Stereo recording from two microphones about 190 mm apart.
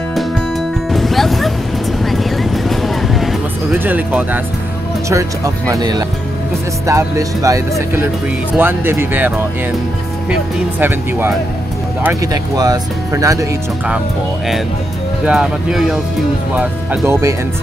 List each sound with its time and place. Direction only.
0.9 s music: centre (ahead or behind)
2.0 s a sound: centre (ahead or behind)
3.7 s speech: 10° right (ahead or behind)
10.8 s speech: 10° right (ahead or behind)
15.2 s speech: centre (ahead or behind)